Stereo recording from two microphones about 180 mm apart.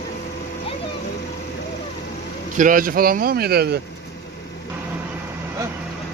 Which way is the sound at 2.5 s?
50° right (ahead or behind).